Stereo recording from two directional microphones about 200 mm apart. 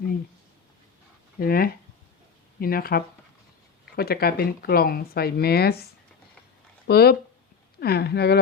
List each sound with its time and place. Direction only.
1.4 s speech: 50° left (ahead or behind)
6.8 s speech: 50° left (ahead or behind)